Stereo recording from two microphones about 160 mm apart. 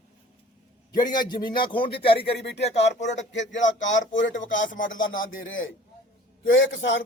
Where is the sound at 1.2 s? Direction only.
25° left (ahead or behind).